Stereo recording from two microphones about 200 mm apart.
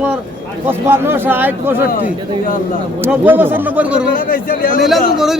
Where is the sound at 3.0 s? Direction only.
10° right (ahead or behind).